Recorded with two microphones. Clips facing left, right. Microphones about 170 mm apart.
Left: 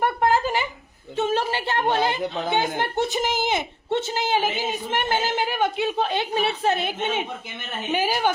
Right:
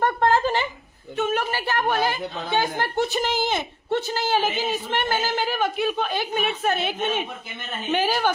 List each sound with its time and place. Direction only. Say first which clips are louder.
0.0 s a sound: right 1 dB; 10° left (ahead or behind)
1.1 s a woman's voice: left 1 dB; 30° left (ahead or behind)
7.9 s a woman's voice: right 1 dB; 10° left (ahead or behind)